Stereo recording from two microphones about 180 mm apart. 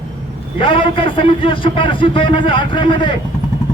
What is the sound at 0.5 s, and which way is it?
A man's voice, 30° left (ahead or behind).